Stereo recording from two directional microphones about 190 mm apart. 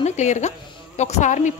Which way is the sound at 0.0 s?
35° left (ahead or behind).